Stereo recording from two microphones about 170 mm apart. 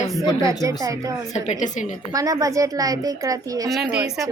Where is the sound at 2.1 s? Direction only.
20° right (ahead or behind).